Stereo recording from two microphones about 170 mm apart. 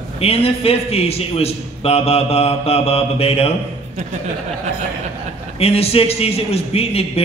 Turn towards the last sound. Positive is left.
turn(degrees=35)  # may be behind; listen again after turning